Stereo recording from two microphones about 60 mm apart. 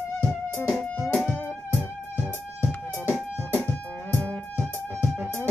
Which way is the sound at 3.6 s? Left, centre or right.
Left.